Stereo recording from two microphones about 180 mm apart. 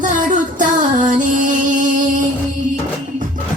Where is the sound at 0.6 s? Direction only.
45° right (ahead or behind).